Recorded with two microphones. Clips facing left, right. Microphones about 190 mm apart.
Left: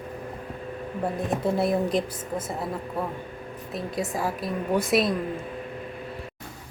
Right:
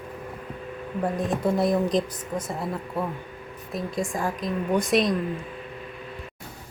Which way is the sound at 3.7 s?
5° left (ahead or behind).